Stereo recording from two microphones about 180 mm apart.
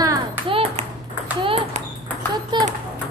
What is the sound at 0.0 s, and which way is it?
Ping, 25° right (ahead or behind).